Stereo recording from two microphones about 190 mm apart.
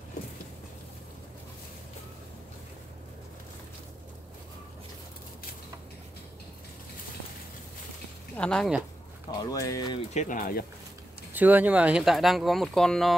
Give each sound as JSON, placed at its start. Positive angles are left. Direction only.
{"t": 8.4, "sound": "speech", "side_deg": 5}
{"t": 9.4, "sound": "speech", "side_deg": 20}
{"t": 10.1, "sound": "speech", "side_deg": 45}
{"t": 11.3, "sound": "speech", "side_deg": -10}